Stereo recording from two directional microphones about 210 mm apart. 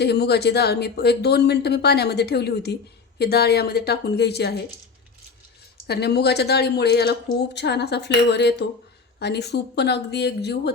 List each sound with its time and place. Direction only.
0.0 s speech: 50° left (ahead or behind)
5.9 s speech: 50° left (ahead or behind)